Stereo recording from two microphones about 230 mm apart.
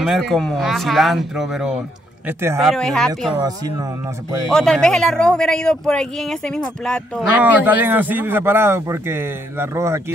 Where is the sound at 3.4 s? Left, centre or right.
Centre.